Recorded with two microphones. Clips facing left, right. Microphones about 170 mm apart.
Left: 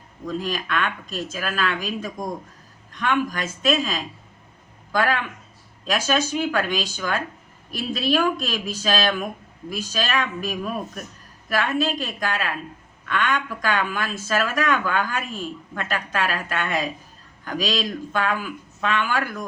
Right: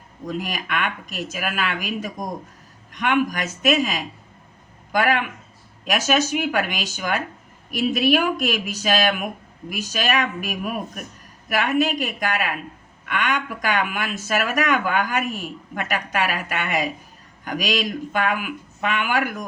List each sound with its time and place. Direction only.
0.3 s speech: 15° right (ahead or behind)